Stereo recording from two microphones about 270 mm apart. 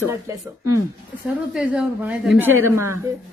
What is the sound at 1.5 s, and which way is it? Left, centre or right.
A woman's voice, centre.